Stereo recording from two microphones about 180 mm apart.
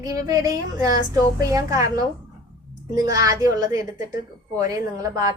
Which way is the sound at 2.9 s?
20° right (ahead or behind).